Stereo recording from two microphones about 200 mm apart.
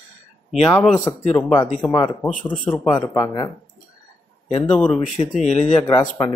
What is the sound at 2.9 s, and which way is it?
Speech, 20° left (ahead or behind).